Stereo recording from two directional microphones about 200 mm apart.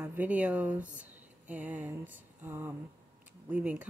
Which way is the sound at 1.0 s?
10° right (ahead or behind).